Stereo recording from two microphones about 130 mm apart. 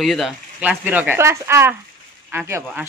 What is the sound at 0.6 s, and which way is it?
Speech, 10° right (ahead or behind).